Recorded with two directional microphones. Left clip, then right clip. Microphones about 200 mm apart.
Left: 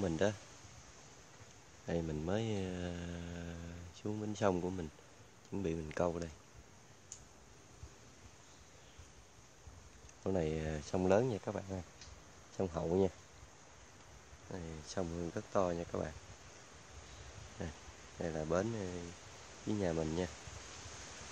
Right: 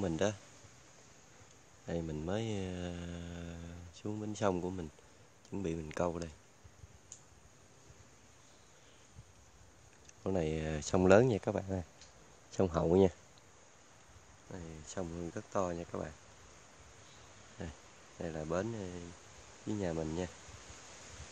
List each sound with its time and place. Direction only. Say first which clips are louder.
0.0 s speech: right 1 dB; 25° right (ahead or behind)
1.9 s speech: even; 10° right (ahead or behind)
10.2 s speech: right 1 dB; 25° right (ahead or behind); by 13.1 s 50° right (ahead or behind)
14.5 s speech: left 2 dB; 15° right (ahead or behind)
17.6 s speech: left 1 dB; 15° right (ahead or behind)